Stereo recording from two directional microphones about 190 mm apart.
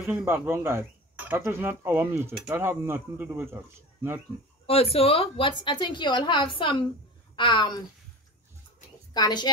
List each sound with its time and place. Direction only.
0.0 s speech: 10° right (ahead or behind)
4.6 s a woman's voice: 30° left (ahead or behind)
9.1 s a woman's voice: 20° left (ahead or behind)